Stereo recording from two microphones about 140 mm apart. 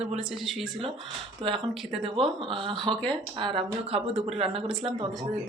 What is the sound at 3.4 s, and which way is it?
Speech, 40° right (ahead or behind).